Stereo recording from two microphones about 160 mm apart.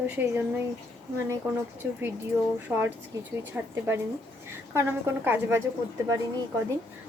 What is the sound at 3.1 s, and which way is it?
A woman's voice, 20° right (ahead or behind).